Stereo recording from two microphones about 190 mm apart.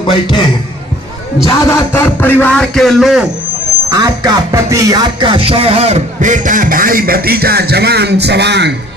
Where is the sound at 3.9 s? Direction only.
20° right (ahead or behind).